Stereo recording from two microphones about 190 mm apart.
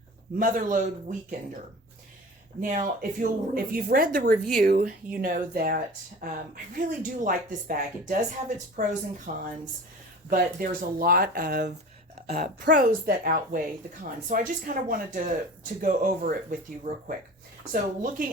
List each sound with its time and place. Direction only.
0.3 s speech: 45° right (ahead or behind)
2.6 s speech: 45° right (ahead or behind)
12.7 s speech: 50° right (ahead or behind)